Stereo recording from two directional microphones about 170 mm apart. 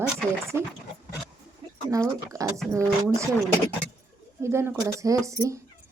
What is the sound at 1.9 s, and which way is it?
Speech, 20° right (ahead or behind).